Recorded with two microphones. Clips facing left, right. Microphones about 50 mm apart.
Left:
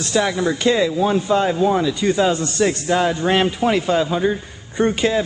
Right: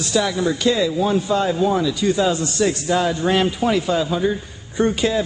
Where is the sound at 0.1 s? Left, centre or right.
Left.